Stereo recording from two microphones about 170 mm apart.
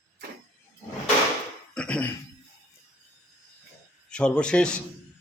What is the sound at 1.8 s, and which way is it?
Cough, 5° left (ahead or behind).